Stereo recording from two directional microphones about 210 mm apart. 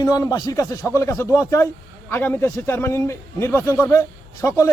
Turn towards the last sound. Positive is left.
turn(degrees=15)  # may be behind; listen again after turning